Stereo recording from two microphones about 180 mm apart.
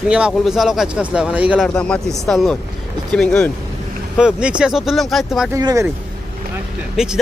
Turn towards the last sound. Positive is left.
turn(degrees=-5)  # may be behind; listen again after turning